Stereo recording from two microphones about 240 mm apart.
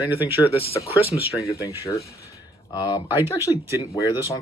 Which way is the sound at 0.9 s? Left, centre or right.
Left.